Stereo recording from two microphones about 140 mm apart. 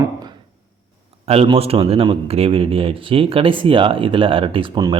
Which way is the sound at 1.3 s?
45° right (ahead or behind).